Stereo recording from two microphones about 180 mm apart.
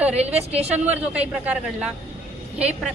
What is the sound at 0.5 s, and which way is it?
Speech, 35° right (ahead or behind).